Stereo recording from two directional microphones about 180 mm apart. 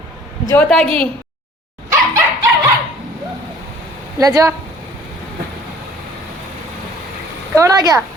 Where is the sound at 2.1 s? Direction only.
15° right (ahead or behind).